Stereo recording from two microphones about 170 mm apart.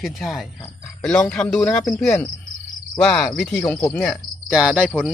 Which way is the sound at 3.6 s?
20° left (ahead or behind).